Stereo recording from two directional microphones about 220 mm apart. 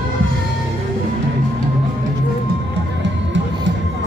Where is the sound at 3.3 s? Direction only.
55° right (ahead or behind).